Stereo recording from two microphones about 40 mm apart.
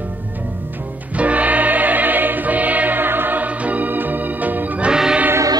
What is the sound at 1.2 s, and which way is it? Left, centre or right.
Music, right.